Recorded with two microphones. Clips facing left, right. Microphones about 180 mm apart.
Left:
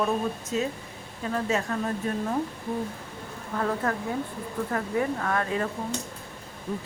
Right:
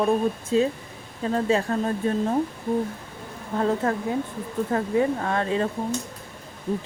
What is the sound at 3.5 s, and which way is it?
Speech, 25° right (ahead or behind).